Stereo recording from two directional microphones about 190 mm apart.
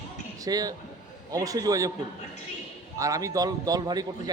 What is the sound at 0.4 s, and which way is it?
Speech, 20° right (ahead or behind).